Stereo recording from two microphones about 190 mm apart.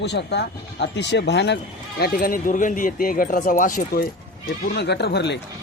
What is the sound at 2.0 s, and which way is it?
Speech, 50° left (ahead or behind).